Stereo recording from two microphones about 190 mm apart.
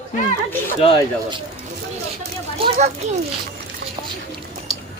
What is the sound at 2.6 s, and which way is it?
Speech, 35° right (ahead or behind).